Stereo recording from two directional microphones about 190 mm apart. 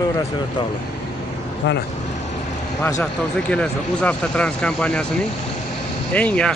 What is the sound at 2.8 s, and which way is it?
Speech, 15° left (ahead or behind).